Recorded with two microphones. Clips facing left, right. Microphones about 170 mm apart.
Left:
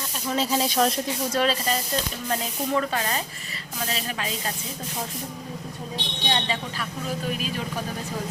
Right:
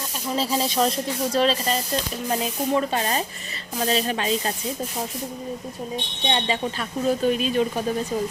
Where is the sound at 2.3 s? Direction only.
20° right (ahead or behind).